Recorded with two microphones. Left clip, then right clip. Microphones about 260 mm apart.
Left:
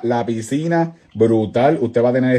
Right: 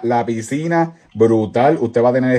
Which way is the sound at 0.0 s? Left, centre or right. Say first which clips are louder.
Right 2 dB; right.